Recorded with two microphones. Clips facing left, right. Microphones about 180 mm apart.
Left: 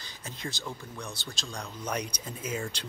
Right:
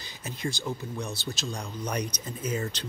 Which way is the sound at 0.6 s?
25° right (ahead or behind).